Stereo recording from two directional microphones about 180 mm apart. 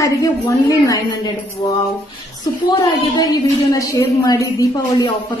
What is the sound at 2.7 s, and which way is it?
A woman's voice, 20° left (ahead or behind).